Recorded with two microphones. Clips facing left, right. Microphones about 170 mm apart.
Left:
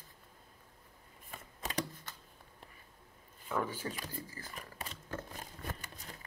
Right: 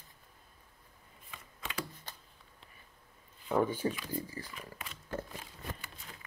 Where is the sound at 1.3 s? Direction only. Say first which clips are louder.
Left 3 dB; 40° left (ahead or behind).